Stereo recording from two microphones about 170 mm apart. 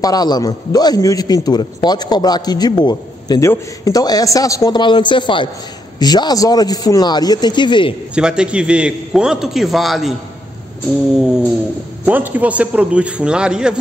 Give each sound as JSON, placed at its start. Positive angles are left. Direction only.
{"t": 0.0, "sound": "a man's voice", "side_deg": 25}
{"t": 8.1, "sound": "a man's voice", "side_deg": -5}
{"t": 12.0, "sound": "a man's voice", "side_deg": -10}